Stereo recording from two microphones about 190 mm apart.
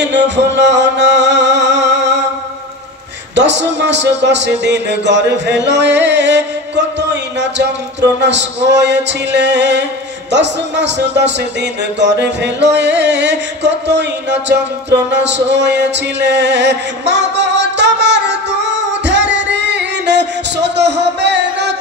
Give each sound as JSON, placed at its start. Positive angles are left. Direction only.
{"t": 0.6, "sound": "music", "side_deg": -65}
{"t": 3.3, "sound": "speech", "side_deg": -65}
{"t": 8.2, "sound": "music", "side_deg": -65}
{"t": 10.3, "sound": "speech", "side_deg": -65}
{"t": 14.9, "sound": "music", "side_deg": -65}